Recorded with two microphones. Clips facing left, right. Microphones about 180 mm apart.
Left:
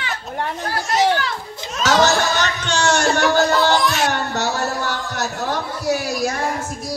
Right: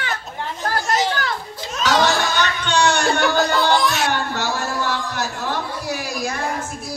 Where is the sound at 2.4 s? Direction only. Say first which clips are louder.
Right 1 dB; 45° left (ahead or behind).